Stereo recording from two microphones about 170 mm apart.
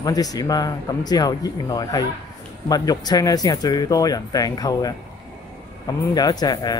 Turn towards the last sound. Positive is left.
turn(degrees=25)  # may be behind; listen again after turning